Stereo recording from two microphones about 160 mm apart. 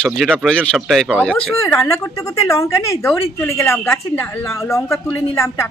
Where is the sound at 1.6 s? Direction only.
20° left (ahead or behind).